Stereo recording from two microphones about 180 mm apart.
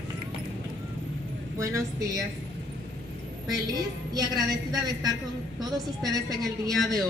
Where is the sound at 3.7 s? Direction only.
20° right (ahead or behind).